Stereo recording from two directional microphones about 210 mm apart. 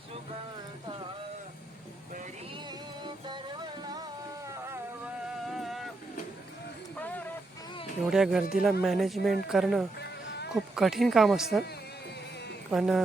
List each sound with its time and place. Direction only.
2.6 s music: 20° right (ahead or behind)
5.5 s vehicle: centre (ahead or behind)
6.9 s a sound: 5° left (ahead or behind)
8.0 s speech: centre (ahead or behind)
10.0 s music: 50° left (ahead or behind)
10.5 s speech: centre (ahead or behind)
12.7 s speech: 5° right (ahead or behind)